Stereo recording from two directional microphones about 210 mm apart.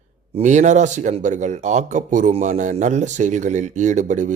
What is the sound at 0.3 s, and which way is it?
Speech, 35° right (ahead or behind).